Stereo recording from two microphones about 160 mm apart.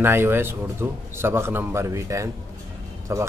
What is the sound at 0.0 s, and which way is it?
Speech, 15° right (ahead or behind).